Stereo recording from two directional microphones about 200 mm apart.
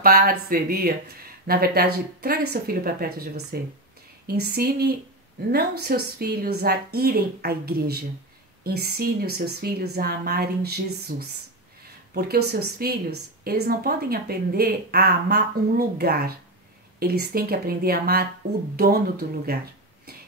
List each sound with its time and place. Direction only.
0.0 s a woman's voice: 45° right (ahead or behind)
19.5 s a woman's voice: 50° right (ahead or behind)